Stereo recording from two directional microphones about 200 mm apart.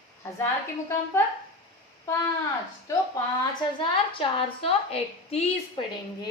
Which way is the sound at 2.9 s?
15° left (ahead or behind).